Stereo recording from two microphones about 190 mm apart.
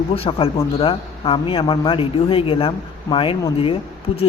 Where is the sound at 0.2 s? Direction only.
30° left (ahead or behind).